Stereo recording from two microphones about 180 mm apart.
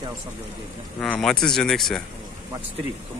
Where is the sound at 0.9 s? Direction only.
5° left (ahead or behind).